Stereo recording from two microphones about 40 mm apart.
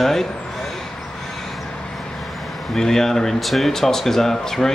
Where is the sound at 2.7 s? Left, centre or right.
Centre.